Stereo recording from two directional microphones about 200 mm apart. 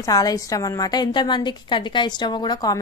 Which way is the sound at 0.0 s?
15° left (ahead or behind).